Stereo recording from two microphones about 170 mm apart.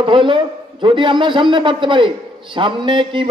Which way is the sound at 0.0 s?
30° right (ahead or behind).